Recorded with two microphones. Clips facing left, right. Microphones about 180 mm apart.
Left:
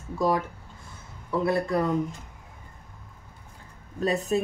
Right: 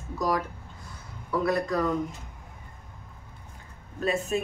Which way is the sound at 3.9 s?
35° left (ahead or behind).